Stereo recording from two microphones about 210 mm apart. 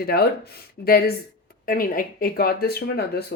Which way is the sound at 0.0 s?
45° left (ahead or behind).